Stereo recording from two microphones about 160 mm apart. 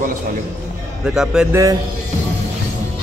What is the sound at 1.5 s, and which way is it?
Speech, 20° right (ahead or behind).